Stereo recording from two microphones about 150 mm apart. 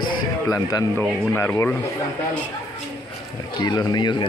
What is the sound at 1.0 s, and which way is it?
Speech, 15° left (ahead or behind).